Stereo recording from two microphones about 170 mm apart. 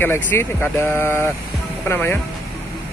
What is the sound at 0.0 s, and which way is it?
Speech, 15° left (ahead or behind).